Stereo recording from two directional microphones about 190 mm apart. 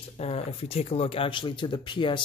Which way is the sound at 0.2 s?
30° left (ahead or behind).